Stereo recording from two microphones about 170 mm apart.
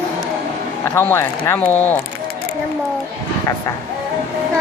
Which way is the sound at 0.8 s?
10° left (ahead or behind).